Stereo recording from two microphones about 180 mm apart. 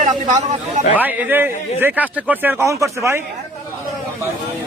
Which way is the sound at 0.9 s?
10° right (ahead or behind).